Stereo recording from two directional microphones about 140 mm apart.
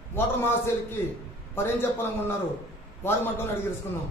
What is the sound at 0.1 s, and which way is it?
A man's voice, 15° left (ahead or behind).